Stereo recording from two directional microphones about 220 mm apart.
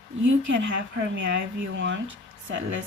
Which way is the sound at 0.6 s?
55° right (ahead or behind).